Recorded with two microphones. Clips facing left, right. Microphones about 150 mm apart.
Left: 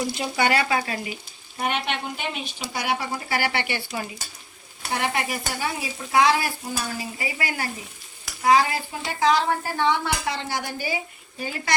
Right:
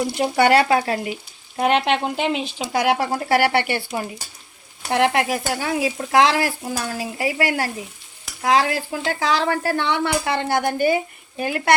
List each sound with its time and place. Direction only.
0.1 s speech: 60° right (ahead or behind)
1.5 s speech: 90° right; by 4.0 s 50° right (ahead or behind)
4.9 s stir: 90° right
8.4 s speech: 75° right (ahead or behind)